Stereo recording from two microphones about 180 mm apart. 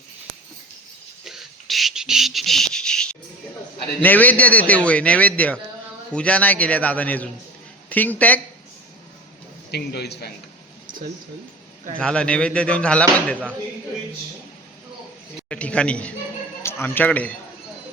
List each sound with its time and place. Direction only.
1.2 s a sound: centre (ahead or behind)
4.0 s a man's voice: 10° left (ahead or behind)
9.7 s a man's voice: 65° left (ahead or behind)
11.9 s speech: 5° left (ahead or behind)
15.4 s a man's voice: 5° left (ahead or behind)